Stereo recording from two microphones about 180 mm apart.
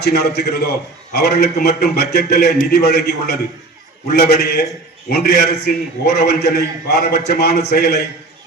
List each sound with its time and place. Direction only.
0.0 s a man's voice: 65° left (ahead or behind)